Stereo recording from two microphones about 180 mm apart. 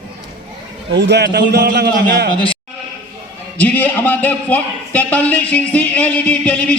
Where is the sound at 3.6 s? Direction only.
10° left (ahead or behind).